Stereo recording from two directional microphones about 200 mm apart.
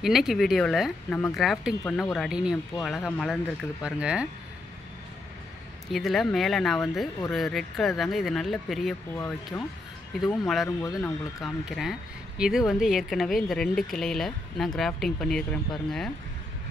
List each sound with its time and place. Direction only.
0.0 s speech: centre (ahead or behind)
5.9 s speech: centre (ahead or behind)
9.1 s speech: 15° left (ahead or behind)
10.2 s speech: centre (ahead or behind)